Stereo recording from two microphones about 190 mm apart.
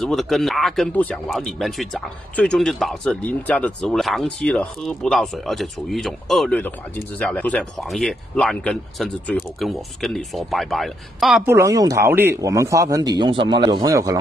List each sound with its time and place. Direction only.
0.0 s speech: centre (ahead or behind)
11.4 s speech: 15° right (ahead or behind)